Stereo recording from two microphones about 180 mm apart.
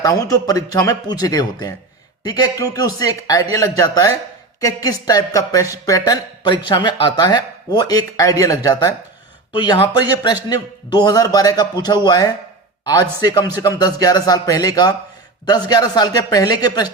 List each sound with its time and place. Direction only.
0.0 s speech: 20° left (ahead or behind)